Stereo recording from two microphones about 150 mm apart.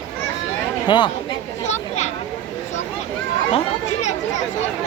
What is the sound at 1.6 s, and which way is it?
Children playing, 50° left (ahead or behind).